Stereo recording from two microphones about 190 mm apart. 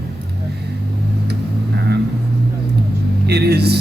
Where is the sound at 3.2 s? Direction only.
60° right (ahead or behind).